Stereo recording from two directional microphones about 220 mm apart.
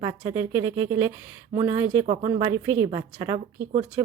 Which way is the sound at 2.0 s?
20° right (ahead or behind).